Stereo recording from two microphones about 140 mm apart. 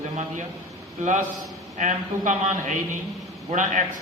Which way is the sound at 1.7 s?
60° right (ahead or behind).